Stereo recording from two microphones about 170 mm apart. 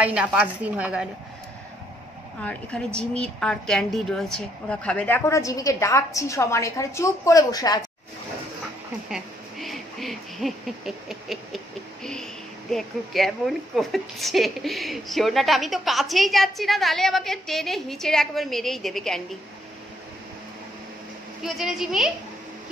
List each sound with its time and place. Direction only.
0.0 s a woman's voice: 5° right (ahead or behind)
2.4 s a woman's voice: 5° left (ahead or behind)
9.1 s a sound: centre (ahead or behind)
12.7 s a woman's voice: centre (ahead or behind)
21.4 s a woman's voice: centre (ahead or behind)